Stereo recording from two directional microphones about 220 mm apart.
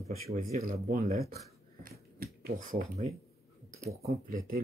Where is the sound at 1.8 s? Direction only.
40° right (ahead or behind).